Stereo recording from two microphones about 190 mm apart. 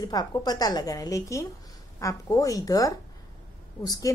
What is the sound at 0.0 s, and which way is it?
A woman's voice, 20° left (ahead or behind).